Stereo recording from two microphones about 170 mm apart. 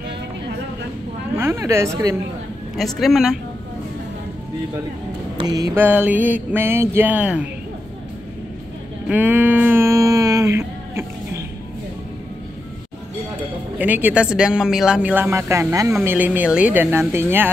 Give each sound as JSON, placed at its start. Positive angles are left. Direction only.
{"t": 1.3, "sound": "a woman's voice", "side_deg": -15}
{"t": 3.0, "sound": "speech", "side_deg": 0}
{"t": 5.4, "sound": "speech", "side_deg": -20}
{"t": 9.1, "sound": "a sound", "side_deg": -10}
{"t": 13.7, "sound": "speech", "side_deg": -10}